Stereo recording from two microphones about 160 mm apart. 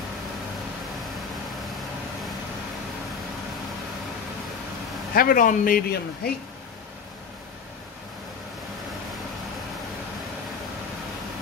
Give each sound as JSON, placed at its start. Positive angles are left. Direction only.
{"t": 5.1, "sound": "speech", "side_deg": 65}